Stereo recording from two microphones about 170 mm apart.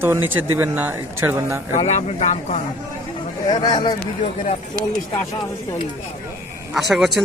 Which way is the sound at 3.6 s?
25° left (ahead or behind).